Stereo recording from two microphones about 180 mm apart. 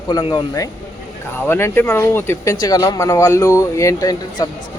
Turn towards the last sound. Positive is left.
turn(degrees=20)  # may be behind; listen again after turning